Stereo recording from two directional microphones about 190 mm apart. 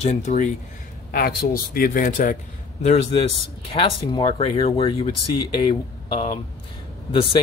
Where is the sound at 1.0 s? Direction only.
50° left (ahead or behind).